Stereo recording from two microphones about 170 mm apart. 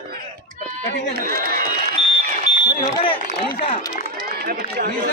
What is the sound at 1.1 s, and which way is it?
Speech, 65° right (ahead or behind).